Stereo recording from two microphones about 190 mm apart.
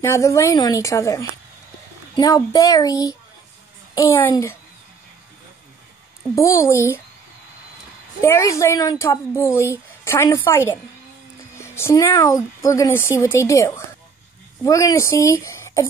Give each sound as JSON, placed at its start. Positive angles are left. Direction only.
{"t": 0.0, "sound": "a child's voice", "side_deg": 15}
{"t": 6.3, "sound": "speech", "side_deg": 15}
{"t": 8.2, "sound": "speech", "side_deg": 15}